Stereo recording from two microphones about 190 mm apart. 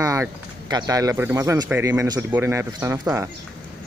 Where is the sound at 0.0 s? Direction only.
15° right (ahead or behind).